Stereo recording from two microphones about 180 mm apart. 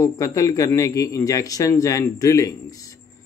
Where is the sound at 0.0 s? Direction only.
20° left (ahead or behind).